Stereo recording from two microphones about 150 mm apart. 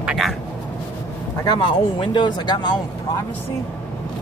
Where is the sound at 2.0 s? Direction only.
30° left (ahead or behind).